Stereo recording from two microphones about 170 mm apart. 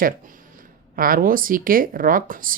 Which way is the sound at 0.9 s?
55° right (ahead or behind).